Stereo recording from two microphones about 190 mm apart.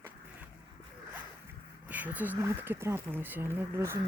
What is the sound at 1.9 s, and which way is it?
Speech, 10° right (ahead or behind).